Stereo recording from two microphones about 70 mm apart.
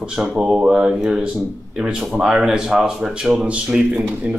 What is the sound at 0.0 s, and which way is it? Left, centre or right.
Speech, centre.